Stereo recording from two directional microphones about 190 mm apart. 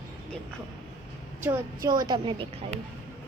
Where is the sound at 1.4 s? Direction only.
20° right (ahead or behind).